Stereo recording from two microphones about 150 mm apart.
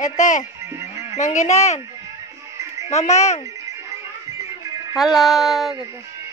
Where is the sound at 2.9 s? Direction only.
45° left (ahead or behind).